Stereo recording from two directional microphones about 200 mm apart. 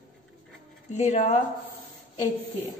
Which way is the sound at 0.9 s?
35° left (ahead or behind).